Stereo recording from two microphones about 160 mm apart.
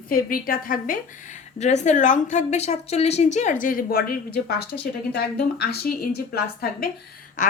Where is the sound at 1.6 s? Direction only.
45° left (ahead or behind); by 6.9 s 75° left (ahead or behind).